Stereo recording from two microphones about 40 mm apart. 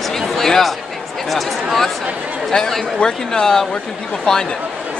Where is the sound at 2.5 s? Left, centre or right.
Centre.